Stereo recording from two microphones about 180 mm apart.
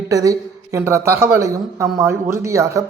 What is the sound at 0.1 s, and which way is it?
Speech, 20° right (ahead or behind).